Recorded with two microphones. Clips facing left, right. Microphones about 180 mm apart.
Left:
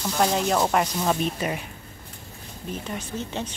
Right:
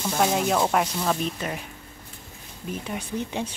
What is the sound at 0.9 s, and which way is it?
Speech, 10° left (ahead or behind).